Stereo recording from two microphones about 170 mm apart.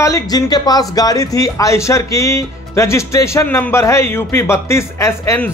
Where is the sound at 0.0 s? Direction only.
20° left (ahead or behind).